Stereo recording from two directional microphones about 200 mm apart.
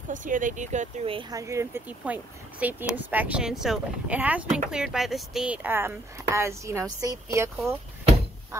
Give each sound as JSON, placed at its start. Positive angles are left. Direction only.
{"t": 0.1, "sound": "speech", "side_deg": -40}